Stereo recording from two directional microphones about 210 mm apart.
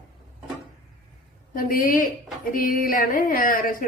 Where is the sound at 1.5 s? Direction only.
45° left (ahead or behind).